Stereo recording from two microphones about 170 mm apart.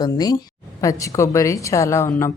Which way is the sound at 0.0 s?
20° left (ahead or behind).